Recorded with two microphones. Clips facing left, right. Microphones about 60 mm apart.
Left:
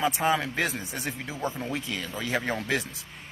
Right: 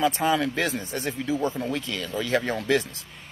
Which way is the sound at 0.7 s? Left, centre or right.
Centre.